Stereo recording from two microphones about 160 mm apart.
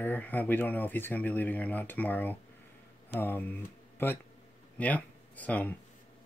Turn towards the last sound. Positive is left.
turn(degrees=10)  # may be behind; listen again after turning